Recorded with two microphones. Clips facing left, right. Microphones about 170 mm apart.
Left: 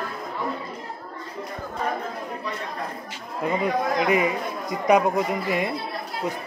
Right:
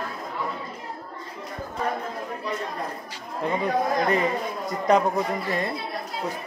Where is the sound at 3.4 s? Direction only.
10° left (ahead or behind).